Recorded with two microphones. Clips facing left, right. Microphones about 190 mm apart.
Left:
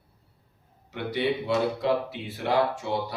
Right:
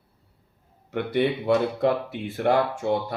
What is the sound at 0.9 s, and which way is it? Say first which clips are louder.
Speech: right 4 dB; 55° right (ahead or behind).